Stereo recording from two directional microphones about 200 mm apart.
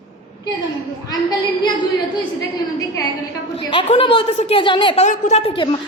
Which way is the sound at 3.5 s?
30° left (ahead or behind).